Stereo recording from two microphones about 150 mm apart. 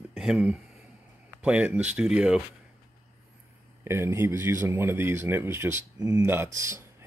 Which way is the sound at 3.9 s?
15° right (ahead or behind).